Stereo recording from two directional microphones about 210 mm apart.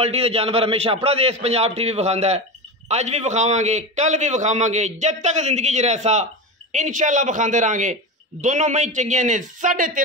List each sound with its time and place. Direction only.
0.0 s a man's voice: 30° right (ahead or behind)